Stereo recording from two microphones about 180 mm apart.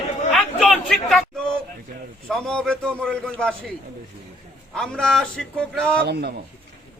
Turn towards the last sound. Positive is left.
turn(degrees=-65)  # may be behind; listen again after turning